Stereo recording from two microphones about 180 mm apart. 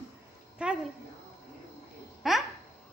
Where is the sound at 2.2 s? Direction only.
Centre (ahead or behind).